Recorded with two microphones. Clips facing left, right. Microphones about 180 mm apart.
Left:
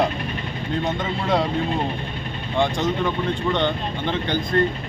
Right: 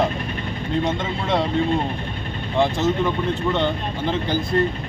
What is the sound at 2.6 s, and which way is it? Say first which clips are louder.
Speech: right 2 dB; 5° right (ahead or behind).